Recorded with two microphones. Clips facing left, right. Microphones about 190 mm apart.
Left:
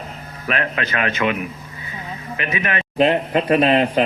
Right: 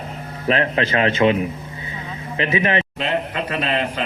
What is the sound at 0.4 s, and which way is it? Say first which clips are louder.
A man's voice: right 4 dB; 25° right (ahead or behind).